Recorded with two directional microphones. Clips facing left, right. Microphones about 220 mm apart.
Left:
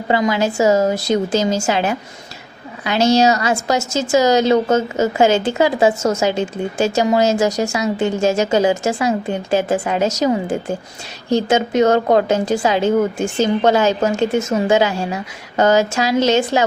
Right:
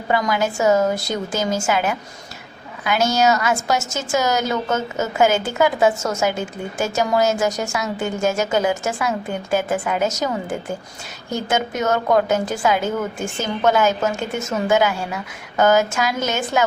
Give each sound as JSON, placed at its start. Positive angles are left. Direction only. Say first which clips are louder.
{"t": 0.1, "sound": "a woman's voice", "louder": "left 3 dB", "side_deg": 25}